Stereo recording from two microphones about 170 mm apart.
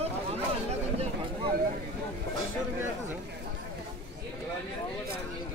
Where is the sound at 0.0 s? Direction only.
40° right (ahead or behind).